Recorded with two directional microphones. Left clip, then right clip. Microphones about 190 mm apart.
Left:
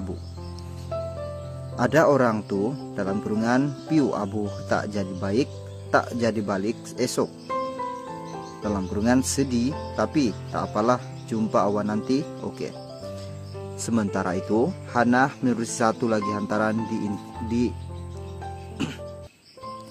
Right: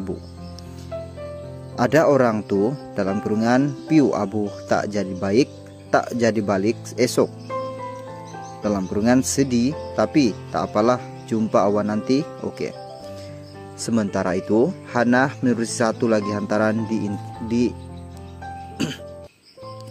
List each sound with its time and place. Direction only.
1.8 s speech: 25° right (ahead or behind)
8.6 s speech: 25° right (ahead or behind)
13.7 s speech: 15° right (ahead or behind)
18.8 s music: 20° right (ahead or behind)